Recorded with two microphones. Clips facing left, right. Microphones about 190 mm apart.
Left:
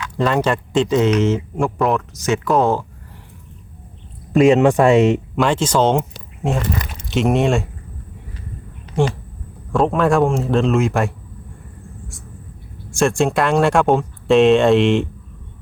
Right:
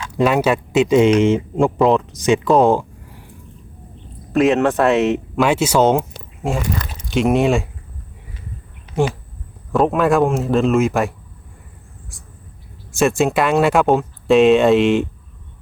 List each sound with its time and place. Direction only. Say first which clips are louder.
0.2 s speech: right 2 dB; 10° right (ahead or behind)
4.4 s speech: left 3 dB; centre (ahead or behind)
4.9 s speech: left 3 dB; 15° left (ahead or behind)
5.4 s speech: right 3 dB; 5° right (ahead or behind)
9.0 s speech: even; centre (ahead or behind)
12.9 s speech: right 1 dB; 5° right (ahead or behind)